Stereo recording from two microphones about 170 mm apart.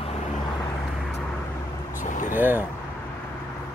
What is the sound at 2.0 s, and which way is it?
Vehicle, 50° left (ahead or behind).